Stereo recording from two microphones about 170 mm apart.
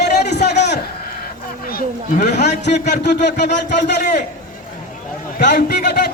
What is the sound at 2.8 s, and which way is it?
Speech, 85° left.